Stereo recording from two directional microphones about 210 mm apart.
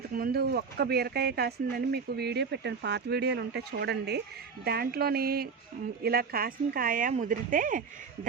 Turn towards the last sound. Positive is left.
turn(degrees=-40)  # may be behind; listen again after turning